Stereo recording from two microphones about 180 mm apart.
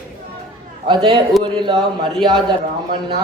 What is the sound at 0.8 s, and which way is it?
A man's voice, 25° right (ahead or behind).